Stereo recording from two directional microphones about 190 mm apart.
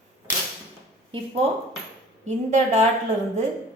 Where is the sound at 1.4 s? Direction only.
30° right (ahead or behind).